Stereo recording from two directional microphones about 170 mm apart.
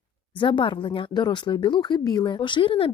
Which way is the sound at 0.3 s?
30° left (ahead or behind).